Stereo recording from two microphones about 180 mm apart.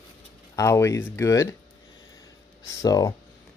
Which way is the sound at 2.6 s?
20° left (ahead or behind).